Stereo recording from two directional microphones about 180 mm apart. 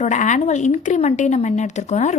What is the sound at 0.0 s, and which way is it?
A woman's voice, 45° left (ahead or behind).